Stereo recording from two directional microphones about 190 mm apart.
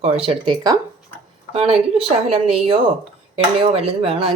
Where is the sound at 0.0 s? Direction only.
30° right (ahead or behind).